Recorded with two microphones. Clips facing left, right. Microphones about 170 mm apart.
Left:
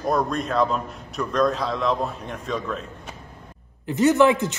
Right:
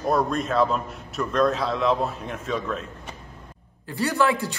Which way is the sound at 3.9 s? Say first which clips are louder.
Left 6 dB; 20° left (ahead or behind).